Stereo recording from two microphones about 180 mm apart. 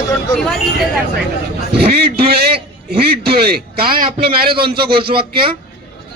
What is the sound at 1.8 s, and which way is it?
A man's voice, 60° right (ahead or behind).